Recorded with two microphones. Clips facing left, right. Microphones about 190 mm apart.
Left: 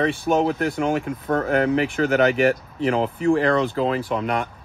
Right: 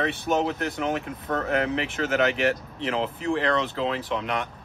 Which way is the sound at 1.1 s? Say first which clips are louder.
Left 5 dB; 45° left (ahead or behind).